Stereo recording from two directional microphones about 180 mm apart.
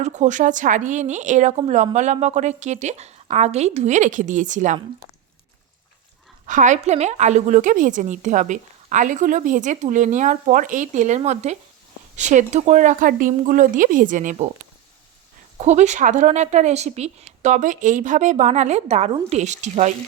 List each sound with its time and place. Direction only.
0.0 s a woman's voice: 40° right (ahead or behind)
6.4 s a woman's voice: 45° right (ahead or behind)
15.5 s a woman's voice: 40° right (ahead or behind)